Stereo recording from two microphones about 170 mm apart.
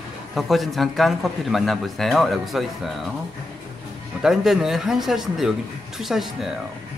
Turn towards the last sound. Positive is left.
turn(degrees=0)  # may be behind; listen again after turning